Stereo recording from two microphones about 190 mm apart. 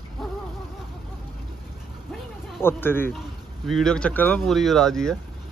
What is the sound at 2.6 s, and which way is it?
A man's voice, 10° left (ahead or behind).